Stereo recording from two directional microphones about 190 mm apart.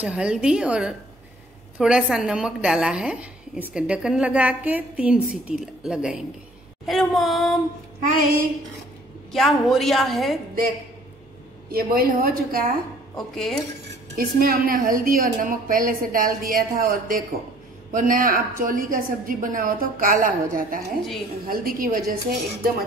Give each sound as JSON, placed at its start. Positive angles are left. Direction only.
{"t": 0.0, "sound": "a woman's voice", "side_deg": -5}
{"t": 8.0, "sound": "a woman's voice", "side_deg": -50}
{"t": 9.3, "sound": "a woman's voice", "side_deg": 0}
{"t": 11.7, "sound": "a woman's voice", "side_deg": -55}
{"t": 14.1, "sound": "a woman's voice", "side_deg": -50}